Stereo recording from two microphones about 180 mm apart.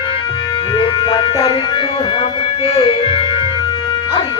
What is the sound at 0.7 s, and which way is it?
Music, 25° left (ahead or behind).